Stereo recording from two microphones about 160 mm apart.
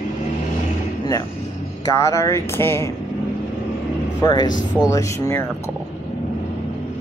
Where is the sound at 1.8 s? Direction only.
20° left (ahead or behind).